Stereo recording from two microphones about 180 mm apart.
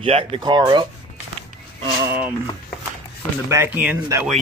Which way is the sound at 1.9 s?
10° right (ahead or behind).